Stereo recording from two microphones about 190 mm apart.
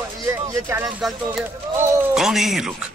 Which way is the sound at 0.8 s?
Centre (ahead or behind).